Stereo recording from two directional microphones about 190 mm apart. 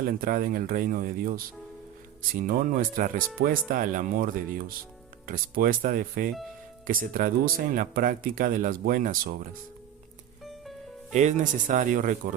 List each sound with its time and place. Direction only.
0.0 s speech: 45° right (ahead or behind)
11.1 s speech: 40° right (ahead or behind)